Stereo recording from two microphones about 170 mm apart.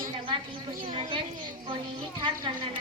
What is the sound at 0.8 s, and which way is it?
A woman's voice, 30° right (ahead or behind).